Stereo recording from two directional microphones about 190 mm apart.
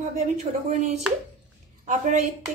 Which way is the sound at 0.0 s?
35° right (ahead or behind).